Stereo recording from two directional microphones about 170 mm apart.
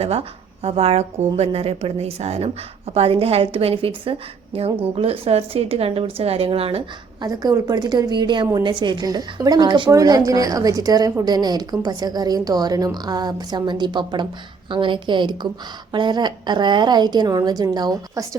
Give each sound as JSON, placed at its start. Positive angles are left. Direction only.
{"t": 0.0, "sound": "speech", "side_deg": -35}
{"t": 7.3, "sound": "a woman's voice", "side_deg": -20}